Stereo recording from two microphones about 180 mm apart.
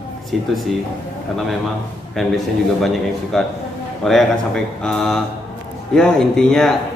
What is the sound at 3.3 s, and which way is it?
A man's voice, centre (ahead or behind).